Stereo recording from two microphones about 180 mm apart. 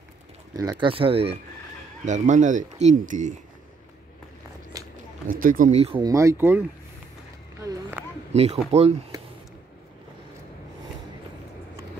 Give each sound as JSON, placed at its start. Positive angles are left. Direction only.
{"t": 0.6, "sound": "speech", "side_deg": -25}
{"t": 5.4, "sound": "speech", "side_deg": -50}
{"t": 6.0, "sound": "speech", "side_deg": -15}
{"t": 7.6, "sound": "a sound", "side_deg": -20}
{"t": 8.3, "sound": "speech", "side_deg": -35}
{"t": 9.1, "sound": "a sound", "side_deg": -20}